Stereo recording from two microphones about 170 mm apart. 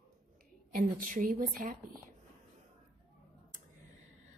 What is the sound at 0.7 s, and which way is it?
A woman's voice, 55° right (ahead or behind).